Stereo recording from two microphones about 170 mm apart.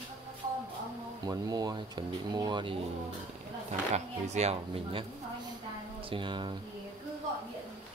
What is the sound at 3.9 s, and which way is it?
Speech, 40° right (ahead or behind).